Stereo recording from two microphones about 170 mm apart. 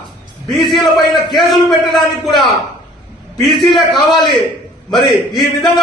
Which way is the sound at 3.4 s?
Centre (ahead or behind).